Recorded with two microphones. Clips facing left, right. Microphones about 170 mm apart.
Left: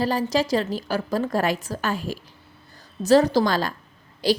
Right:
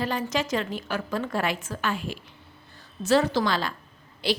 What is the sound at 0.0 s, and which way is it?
A woman's voice, 35° left (ahead or behind).